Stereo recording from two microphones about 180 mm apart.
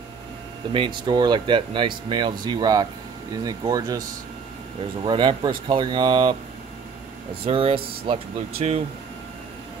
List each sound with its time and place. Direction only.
0.7 s speech: 25° right (ahead or behind)
5.0 s speech: 25° right (ahead or behind)
7.4 s speech: 30° right (ahead or behind)